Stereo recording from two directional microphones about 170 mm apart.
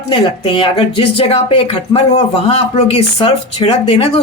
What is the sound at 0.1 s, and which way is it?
Speech, 30° left (ahead or behind).